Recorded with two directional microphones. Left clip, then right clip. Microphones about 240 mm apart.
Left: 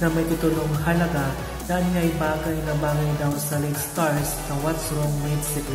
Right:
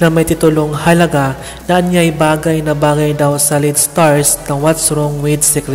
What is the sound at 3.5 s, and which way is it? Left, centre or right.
A man's voice, right.